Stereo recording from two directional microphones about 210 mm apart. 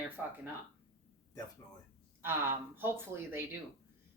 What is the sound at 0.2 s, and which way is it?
Speech, 5° right (ahead or behind).